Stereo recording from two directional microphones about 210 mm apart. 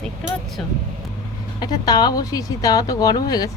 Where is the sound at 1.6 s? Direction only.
20° left (ahead or behind).